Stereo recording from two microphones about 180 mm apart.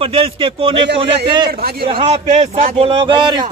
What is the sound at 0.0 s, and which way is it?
Speech, 30° right (ahead or behind).